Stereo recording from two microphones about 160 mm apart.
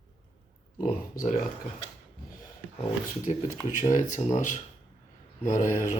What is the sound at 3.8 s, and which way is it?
Speech, 55° left (ahead or behind).